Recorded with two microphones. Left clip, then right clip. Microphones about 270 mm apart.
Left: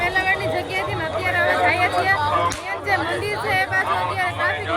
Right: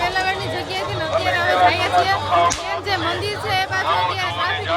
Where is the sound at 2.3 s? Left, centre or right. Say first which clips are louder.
Right 4 dB; right.